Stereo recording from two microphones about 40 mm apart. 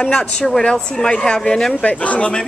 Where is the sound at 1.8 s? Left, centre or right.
Left.